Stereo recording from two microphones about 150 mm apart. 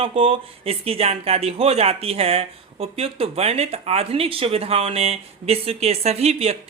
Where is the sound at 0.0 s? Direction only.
40° right (ahead or behind).